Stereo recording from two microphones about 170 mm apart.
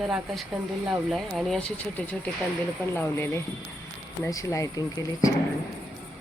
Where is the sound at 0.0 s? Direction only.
Centre (ahead or behind).